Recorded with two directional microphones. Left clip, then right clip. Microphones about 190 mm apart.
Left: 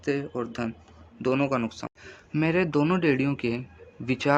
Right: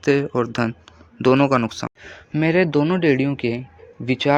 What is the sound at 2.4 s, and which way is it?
A man's voice, 25° right (ahead or behind).